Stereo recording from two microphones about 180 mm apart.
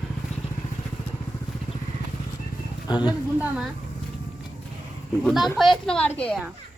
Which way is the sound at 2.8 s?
25° left (ahead or behind).